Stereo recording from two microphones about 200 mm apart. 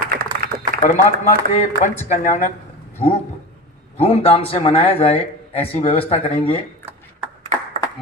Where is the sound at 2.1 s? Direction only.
40° left (ahead or behind).